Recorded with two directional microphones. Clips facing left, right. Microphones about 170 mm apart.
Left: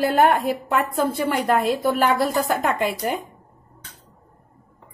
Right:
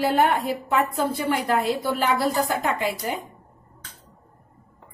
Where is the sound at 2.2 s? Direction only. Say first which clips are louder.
Left 2 dB; 50° left (ahead or behind).